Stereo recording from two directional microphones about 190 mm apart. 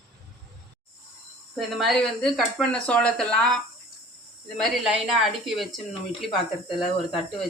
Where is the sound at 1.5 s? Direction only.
Centre (ahead or behind).